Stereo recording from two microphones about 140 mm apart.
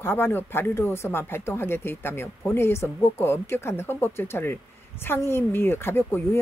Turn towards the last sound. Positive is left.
turn(degrees=15)  # may be behind; listen again after turning